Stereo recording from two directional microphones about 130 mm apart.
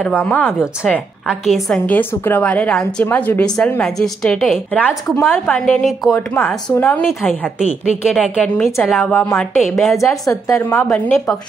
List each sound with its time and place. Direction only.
0.2 s a woman's voice: 10° left (ahead or behind)
1.2 s a woman's voice: centre (ahead or behind)
1.9 s a woman's voice: 15° left (ahead or behind)
6.1 s a woman's voice: 15° left (ahead or behind)
8.1 s a woman's voice: 5° left (ahead or behind)
10.2 s a woman's voice: 20° left (ahead or behind)